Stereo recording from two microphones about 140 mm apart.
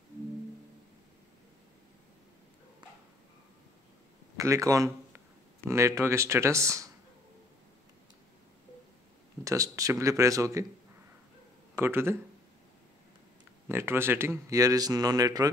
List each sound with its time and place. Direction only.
4.4 s speech: 25° right (ahead or behind)
9.4 s speech: 25° right (ahead or behind)
11.7 s speech: 15° right (ahead or behind)
13.7 s speech: 15° right (ahead or behind)